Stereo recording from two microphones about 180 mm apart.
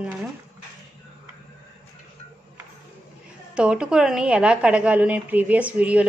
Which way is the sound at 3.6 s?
5° right (ahead or behind).